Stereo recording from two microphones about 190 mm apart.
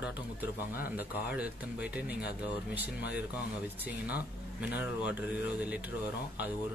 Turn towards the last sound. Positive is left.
turn(degrees=-5)  # may be behind; listen again after turning